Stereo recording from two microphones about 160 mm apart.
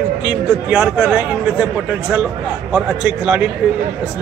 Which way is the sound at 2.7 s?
5° right (ahead or behind).